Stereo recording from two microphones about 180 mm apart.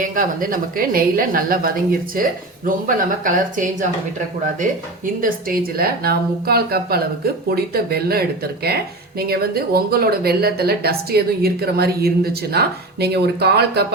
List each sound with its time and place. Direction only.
0.0 s a woman's voice: 50° right (ahead or behind)
5.2 s speech: 55° right (ahead or behind)